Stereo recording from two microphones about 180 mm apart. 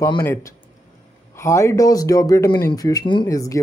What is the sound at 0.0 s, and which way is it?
Speech, 15° left (ahead or behind).